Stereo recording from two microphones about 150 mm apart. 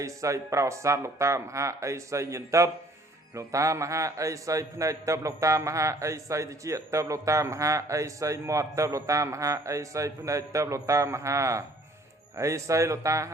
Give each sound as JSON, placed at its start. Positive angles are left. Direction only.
{"t": 0.0, "sound": "a man's voice", "side_deg": -20}